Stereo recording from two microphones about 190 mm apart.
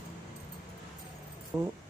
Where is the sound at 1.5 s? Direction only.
15° right (ahead or behind).